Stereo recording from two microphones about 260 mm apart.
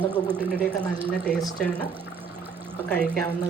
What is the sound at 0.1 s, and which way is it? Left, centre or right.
Speech, centre.